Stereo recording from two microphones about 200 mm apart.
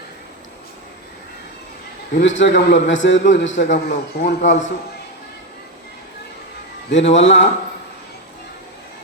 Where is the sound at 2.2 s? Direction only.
65° left (ahead or behind).